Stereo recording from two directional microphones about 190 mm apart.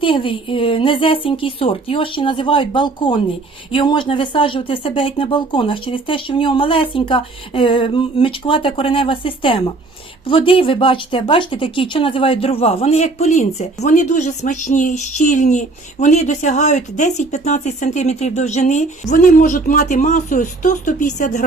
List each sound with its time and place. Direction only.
0.0 s speech: 25° left (ahead or behind)